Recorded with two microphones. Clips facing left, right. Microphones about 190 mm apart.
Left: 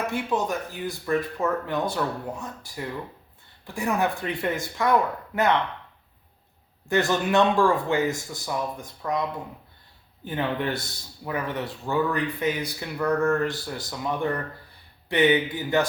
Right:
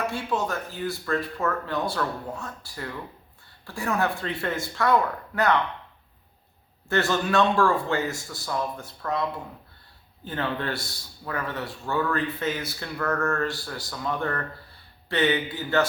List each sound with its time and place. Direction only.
0.1 s a man's voice: 15° left (ahead or behind)
6.8 s a man's voice: 15° left (ahead or behind)
10.2 s a man's voice: 15° left (ahead or behind)